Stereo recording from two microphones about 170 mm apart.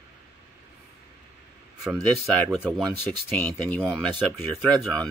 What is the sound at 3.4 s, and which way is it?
Speech, 10° left (ahead or behind).